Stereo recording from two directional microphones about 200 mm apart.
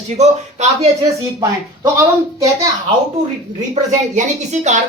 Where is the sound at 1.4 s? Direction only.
15° right (ahead or behind).